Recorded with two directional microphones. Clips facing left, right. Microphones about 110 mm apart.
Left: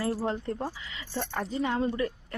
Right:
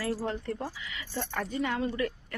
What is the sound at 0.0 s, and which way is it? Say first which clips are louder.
Speech: left 2 dB; 15° left (ahead or behind).